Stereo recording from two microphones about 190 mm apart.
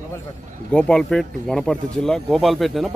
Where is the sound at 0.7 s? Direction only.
5° left (ahead or behind).